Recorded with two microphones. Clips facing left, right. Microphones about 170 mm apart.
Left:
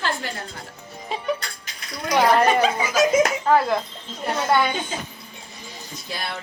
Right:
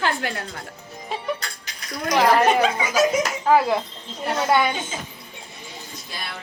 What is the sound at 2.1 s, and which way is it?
A woman's voice, centre (ahead or behind).